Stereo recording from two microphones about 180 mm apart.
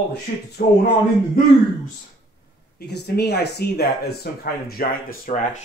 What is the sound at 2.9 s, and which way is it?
Speech, 70° left (ahead or behind).